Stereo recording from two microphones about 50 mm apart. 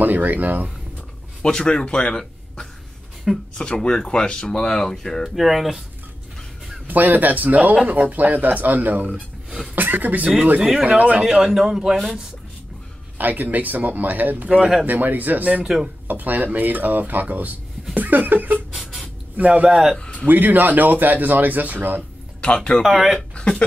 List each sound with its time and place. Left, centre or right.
0.0 s speech: right
1.4 s a man's voice: centre
5.3 s speech: centre
6.9 s speech: right
11.5 s speech: centre
13.2 s speech: right
15.6 s speech: centre
16.1 s speech: right
20.0 s a sound: centre
20.2 s speech: right
22.4 s speech: centre
22.8 s speech: centre
23.1 s speech: centre